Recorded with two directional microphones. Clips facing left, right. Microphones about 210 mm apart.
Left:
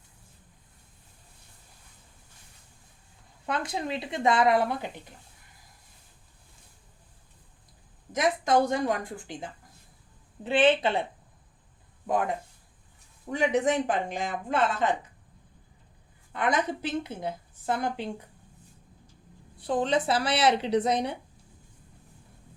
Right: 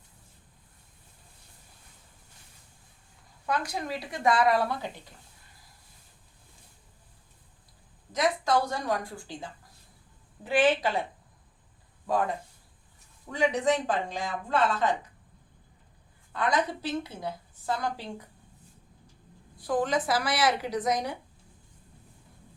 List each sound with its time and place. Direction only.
3.4 s a woman's voice: 25° left (ahead or behind)
8.1 s a woman's voice: 20° left (ahead or behind)
13.3 s a woman's voice: 20° left (ahead or behind)
16.3 s a woman's voice: 20° left (ahead or behind)
19.6 s a woman's voice: 25° left (ahead or behind)